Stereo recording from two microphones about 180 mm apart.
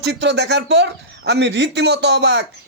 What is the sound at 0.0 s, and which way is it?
Speech, 70° right (ahead or behind).